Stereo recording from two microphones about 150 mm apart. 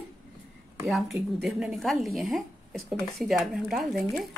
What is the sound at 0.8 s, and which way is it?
Speech, centre (ahead or behind).